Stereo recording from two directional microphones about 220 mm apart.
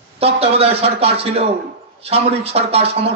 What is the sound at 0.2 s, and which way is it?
Speech, 25° right (ahead or behind).